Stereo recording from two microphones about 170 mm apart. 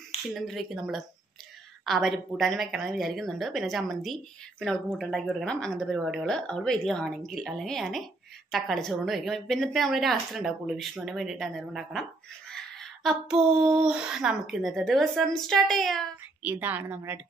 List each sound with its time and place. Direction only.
0.3 s a woman's voice: centre (ahead or behind)
16.4 s a woman's voice: 10° right (ahead or behind)